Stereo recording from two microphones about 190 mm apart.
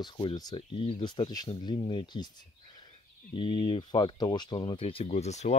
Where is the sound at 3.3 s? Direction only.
25° left (ahead or behind).